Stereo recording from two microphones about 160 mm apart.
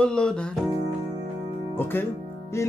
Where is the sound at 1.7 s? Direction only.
15° left (ahead or behind).